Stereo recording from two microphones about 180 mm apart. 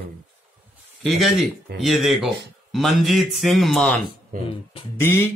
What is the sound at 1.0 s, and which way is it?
Speech, centre (ahead or behind).